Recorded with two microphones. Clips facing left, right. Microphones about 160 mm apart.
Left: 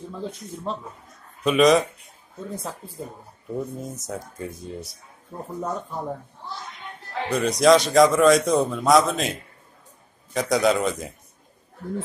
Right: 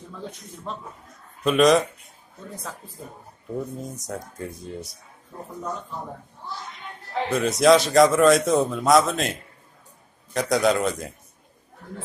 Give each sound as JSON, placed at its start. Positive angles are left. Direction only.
{"t": 0.1, "sound": "speech", "side_deg": 30}
{"t": 1.4, "sound": "a man's voice", "side_deg": 0}
{"t": 3.5, "sound": "a man's voice", "side_deg": 0}
{"t": 7.2, "sound": "a man's voice", "side_deg": 0}